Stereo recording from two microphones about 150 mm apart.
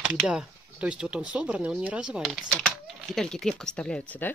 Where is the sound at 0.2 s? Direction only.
5° right (ahead or behind).